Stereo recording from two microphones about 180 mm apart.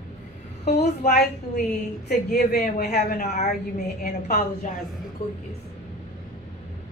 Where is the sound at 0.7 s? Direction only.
40° left (ahead or behind).